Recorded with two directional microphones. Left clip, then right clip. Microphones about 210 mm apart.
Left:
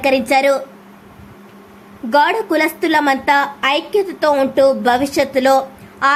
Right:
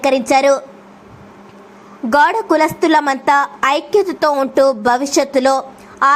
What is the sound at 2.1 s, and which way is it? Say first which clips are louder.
A woman's voice: right 2 dB; 15° right (ahead or behind).